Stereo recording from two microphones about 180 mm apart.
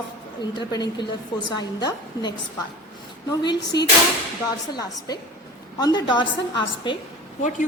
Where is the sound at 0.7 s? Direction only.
25° left (ahead or behind).